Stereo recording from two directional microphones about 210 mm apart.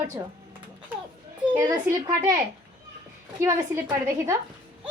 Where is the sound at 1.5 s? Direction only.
15° right (ahead or behind).